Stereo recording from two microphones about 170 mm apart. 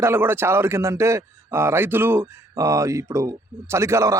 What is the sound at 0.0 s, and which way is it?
A man's voice, 15° right (ahead or behind).